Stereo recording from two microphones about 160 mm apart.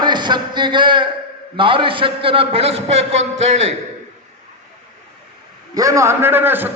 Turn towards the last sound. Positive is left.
turn(degrees=-15)  # may be behind; listen again after turning